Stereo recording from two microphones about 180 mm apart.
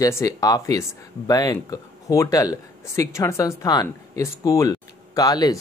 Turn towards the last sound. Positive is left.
turn(degrees=20)  # may be behind; listen again after turning